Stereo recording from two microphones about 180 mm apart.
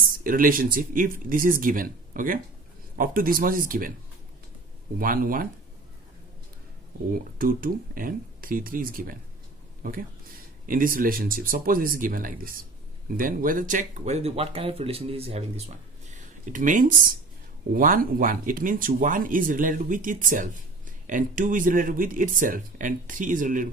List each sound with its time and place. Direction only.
0.1 s speech: 50° right (ahead or behind)
4.9 s speech: 50° right (ahead or behind)
7.3 s speech: 50° right (ahead or behind)
10.7 s speech: 50° right (ahead or behind)